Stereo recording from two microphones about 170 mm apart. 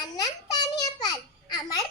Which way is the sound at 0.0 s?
20° left (ahead or behind).